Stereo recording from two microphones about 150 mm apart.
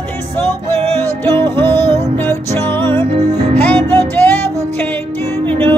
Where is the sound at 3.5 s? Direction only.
15° left (ahead or behind).